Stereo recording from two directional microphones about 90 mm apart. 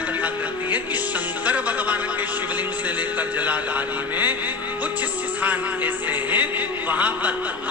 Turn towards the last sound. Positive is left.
turn(degrees=-15)  # may be behind; listen again after turning